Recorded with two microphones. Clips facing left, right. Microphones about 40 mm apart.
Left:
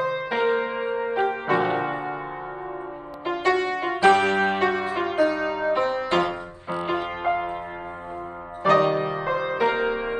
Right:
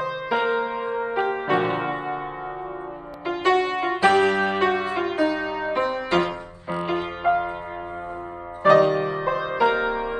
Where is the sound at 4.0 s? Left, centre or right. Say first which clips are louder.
Left 1 dB; left.